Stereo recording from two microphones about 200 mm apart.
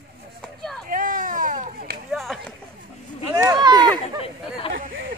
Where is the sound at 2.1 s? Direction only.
Centre (ahead or behind).